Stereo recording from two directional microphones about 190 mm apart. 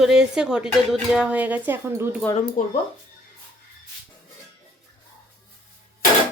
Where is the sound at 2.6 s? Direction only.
45° left (ahead or behind).